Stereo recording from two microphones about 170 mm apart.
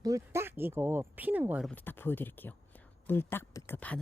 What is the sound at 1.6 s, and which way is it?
Speech, 10° left (ahead or behind).